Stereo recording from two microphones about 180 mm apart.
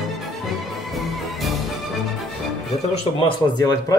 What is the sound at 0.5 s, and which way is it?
Music, centre (ahead or behind).